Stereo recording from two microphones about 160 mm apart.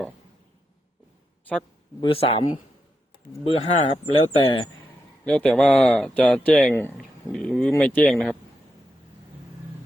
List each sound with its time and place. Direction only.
2.0 s speech: 35° left (ahead or behind)
5.2 s speech: 5° left (ahead or behind)